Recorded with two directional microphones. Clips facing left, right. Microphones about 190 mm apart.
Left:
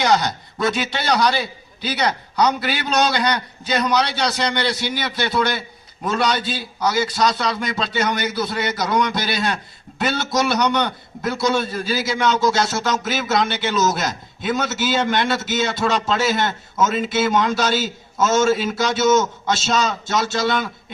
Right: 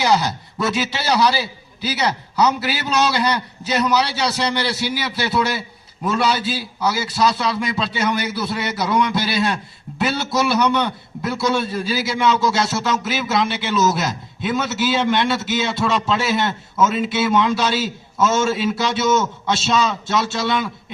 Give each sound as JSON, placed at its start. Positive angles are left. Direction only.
{"t": 0.0, "sound": "a man's voice", "side_deg": -5}